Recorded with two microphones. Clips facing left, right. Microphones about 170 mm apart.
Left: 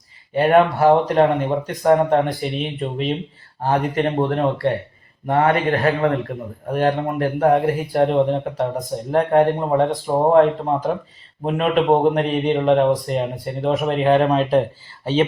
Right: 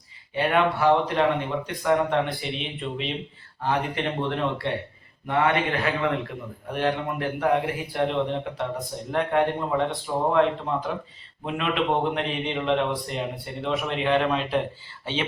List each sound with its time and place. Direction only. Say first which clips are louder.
0.3 s a man's voice: left 8 dB; 45° left (ahead or behind)